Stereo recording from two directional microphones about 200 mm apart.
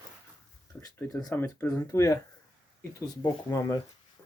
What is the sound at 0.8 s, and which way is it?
Speech, 15° left (ahead or behind).